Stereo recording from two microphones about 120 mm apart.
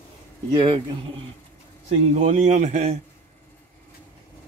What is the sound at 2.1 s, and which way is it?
Speech, 75° right (ahead or behind).